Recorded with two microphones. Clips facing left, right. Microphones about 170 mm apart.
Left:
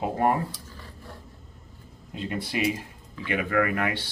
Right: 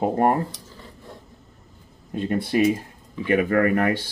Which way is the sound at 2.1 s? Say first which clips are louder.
Right 8 dB; 50° right (ahead or behind).